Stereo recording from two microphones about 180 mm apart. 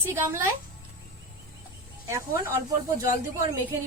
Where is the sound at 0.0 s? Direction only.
15° right (ahead or behind).